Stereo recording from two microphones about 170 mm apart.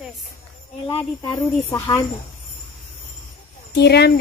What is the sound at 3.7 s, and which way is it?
Speech, 75° left (ahead or behind).